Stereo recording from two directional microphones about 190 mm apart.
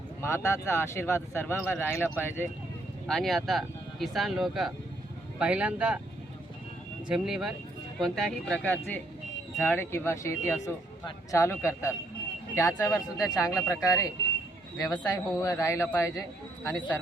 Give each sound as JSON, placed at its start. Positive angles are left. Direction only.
{"t": 0.2, "sound": "speech", "side_deg": 15}
{"t": 3.1, "sound": "speech", "side_deg": 0}
{"t": 7.1, "sound": "speech", "side_deg": -5}